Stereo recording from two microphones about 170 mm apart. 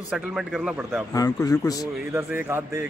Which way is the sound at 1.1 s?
20° left (ahead or behind).